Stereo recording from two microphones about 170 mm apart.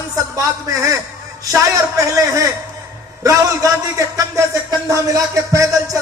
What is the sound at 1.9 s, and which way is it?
Music, 20° right (ahead or behind).